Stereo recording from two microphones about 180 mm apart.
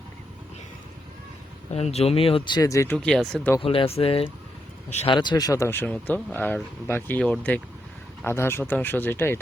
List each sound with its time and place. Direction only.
1.7 s speech: 35° left (ahead or behind); by 3.5 s 5° left (ahead or behind)
3.6 s speech: 30° left (ahead or behind)
5.1 s speech: 25° left (ahead or behind)